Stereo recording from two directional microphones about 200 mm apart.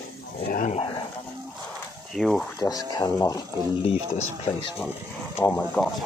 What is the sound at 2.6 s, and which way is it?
Speech, 20° left (ahead or behind).